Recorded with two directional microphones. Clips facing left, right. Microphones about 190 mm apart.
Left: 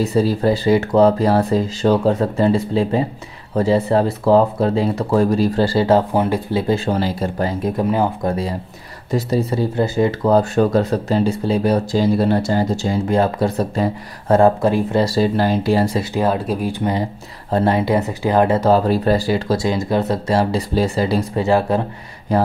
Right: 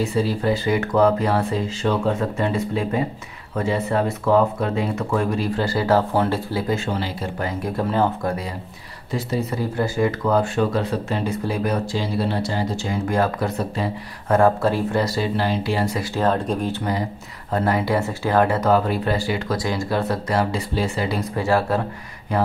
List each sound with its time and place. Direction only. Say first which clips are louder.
0.0 s speech: left 5 dB; 40° left (ahead or behind); by 6.6 s 15° left (ahead or behind)
6.7 s speech: left 7 dB; 40° left (ahead or behind)
7.6 s speech: left 2 dB; 15° left (ahead or behind)
9.1 s speech: left 6 dB; 35° left (ahead or behind)
15.3 s speech: left 6 dB; 45° left (ahead or behind)
16.0 s speech: left 2 dB; 10° left (ahead or behind)
17.5 s speech: left 4 dB; 30° left (ahead or behind)
21.4 s speech: left 3 dB; 20° left (ahead or behind)
22.3 s speech: left 4 dB; 35° left (ahead or behind)